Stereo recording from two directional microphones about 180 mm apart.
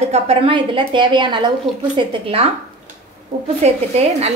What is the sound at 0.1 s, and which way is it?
A woman's voice, 30° right (ahead or behind).